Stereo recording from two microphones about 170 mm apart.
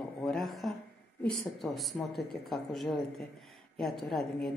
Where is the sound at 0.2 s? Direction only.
Centre (ahead or behind).